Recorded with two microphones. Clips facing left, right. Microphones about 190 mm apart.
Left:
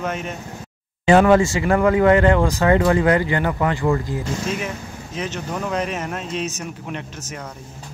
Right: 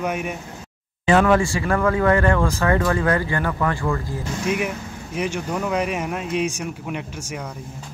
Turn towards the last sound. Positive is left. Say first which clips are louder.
# right 2 dB
turn(degrees=-10)  # may be behind; listen again after turning